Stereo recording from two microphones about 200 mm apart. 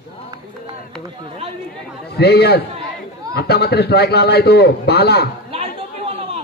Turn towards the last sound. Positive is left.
turn(degrees=-30)  # may be behind; listen again after turning